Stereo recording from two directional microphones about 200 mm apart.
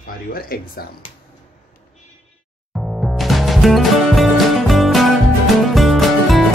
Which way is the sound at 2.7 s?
Centre (ahead or behind).